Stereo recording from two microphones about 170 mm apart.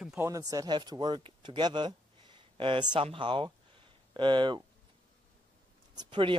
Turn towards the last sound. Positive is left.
turn(degrees=-30)  # may be behind; listen again after turning